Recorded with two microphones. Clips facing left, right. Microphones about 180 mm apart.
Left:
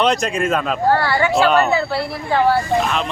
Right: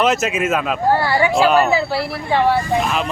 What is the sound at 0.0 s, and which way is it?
Speech, 5° right (ahead or behind).